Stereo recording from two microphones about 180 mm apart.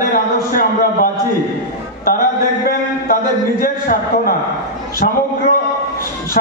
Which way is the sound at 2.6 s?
55° left (ahead or behind).